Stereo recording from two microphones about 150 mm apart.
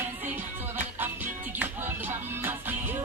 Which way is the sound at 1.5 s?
15° right (ahead or behind).